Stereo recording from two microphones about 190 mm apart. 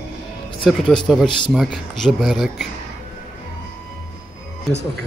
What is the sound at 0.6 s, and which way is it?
Speech, 5° left (ahead or behind).